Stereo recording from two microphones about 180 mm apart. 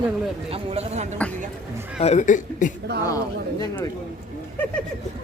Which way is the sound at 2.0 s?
40° left (ahead or behind).